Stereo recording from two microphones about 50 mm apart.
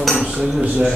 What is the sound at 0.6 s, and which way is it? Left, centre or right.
Speech, right.